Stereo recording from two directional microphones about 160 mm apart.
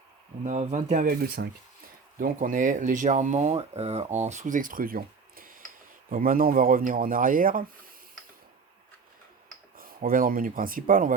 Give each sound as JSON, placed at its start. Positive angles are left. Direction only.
{"t": 0.4, "sound": "speech", "side_deg": -50}
{"t": 2.1, "sound": "speech", "side_deg": -55}
{"t": 9.7, "sound": "speech", "side_deg": -60}